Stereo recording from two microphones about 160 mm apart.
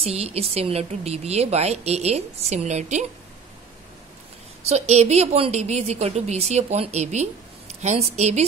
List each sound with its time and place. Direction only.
0.0 s speech: 40° right (ahead or behind)
4.6 s a woman's voice: 45° right (ahead or behind)